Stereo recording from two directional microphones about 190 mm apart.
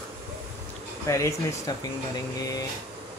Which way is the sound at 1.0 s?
15° left (ahead or behind).